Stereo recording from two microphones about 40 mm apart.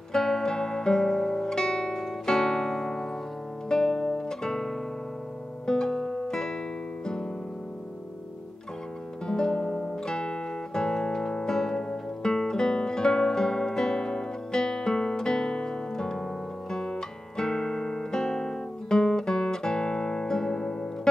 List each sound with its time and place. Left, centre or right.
0.1 s music: centre
9.3 s music: left
16.7 s guitar: centre